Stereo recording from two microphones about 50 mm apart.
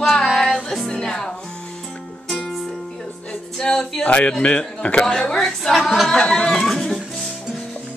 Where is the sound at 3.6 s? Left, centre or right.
Centre.